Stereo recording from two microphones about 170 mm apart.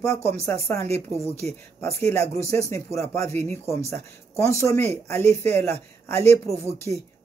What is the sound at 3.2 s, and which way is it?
Speech, 40° right (ahead or behind).